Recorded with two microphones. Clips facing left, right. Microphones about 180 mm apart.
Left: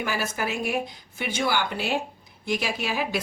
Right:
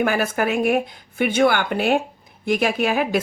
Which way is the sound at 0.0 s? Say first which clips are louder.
Right 8 dB; 55° right (ahead or behind).